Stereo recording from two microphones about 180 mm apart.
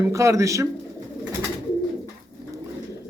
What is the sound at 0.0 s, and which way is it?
Speech, 15° right (ahead or behind).